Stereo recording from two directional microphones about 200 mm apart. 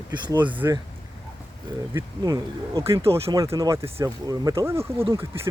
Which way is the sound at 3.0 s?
30° right (ahead or behind).